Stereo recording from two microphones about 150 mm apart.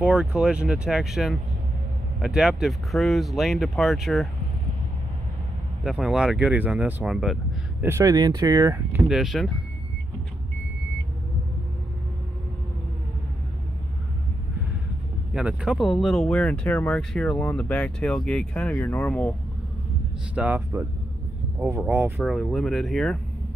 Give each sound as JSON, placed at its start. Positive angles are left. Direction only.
{"t": 0.0, "sound": "speech", "side_deg": -5}
{"t": 5.9, "sound": "speech", "side_deg": -5}
{"t": 8.0, "sound": "speech", "side_deg": -25}
{"t": 9.0, "sound": "speech", "side_deg": 0}
{"t": 15.3, "sound": "speech", "side_deg": -5}
{"t": 20.3, "sound": "speech", "side_deg": -10}
{"t": 21.8, "sound": "speech", "side_deg": -15}
{"t": 22.2, "sound": "speech", "side_deg": 0}